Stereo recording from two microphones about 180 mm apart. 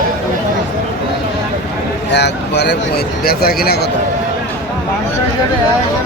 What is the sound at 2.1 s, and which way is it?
Speech, 70° left (ahead or behind).